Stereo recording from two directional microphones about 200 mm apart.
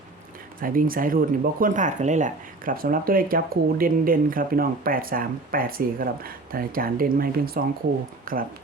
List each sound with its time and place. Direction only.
0.6 s speech: 45° right (ahead or behind)